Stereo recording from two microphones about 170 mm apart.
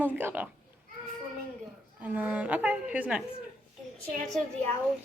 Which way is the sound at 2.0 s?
10° right (ahead or behind).